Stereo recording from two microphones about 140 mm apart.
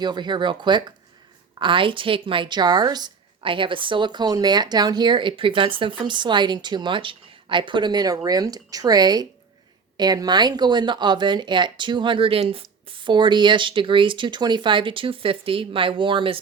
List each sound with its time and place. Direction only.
0.0 s a woman's voice: 30° right (ahead or behind)